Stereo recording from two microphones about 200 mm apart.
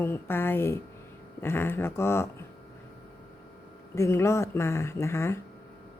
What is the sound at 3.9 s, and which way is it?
Speech, 15° left (ahead or behind).